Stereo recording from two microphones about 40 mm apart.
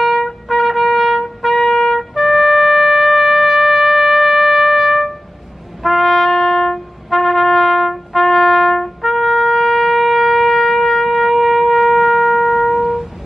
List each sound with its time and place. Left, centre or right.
0.5 s trumpet: centre
2.1 s wind instrument: centre
5.8 s brass instrument: centre
9.0 s shofar: centre